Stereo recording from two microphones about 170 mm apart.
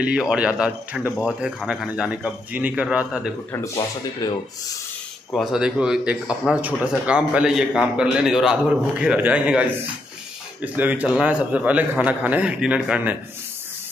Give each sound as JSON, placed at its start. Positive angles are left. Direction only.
{"t": 0.0, "sound": "speech", "side_deg": -5}
{"t": 3.5, "sound": "speech", "side_deg": 15}
{"t": 5.3, "sound": "a man's voice", "side_deg": 0}